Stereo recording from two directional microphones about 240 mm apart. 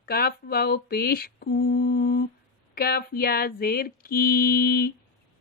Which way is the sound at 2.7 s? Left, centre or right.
Left.